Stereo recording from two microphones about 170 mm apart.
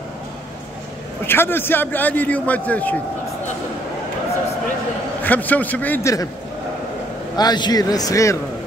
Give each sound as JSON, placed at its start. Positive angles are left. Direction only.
{"t": 1.2, "sound": "a man's voice", "side_deg": 15}
{"t": 5.2, "sound": "a man's voice", "side_deg": 10}
{"t": 7.3, "sound": "a man's voice", "side_deg": 25}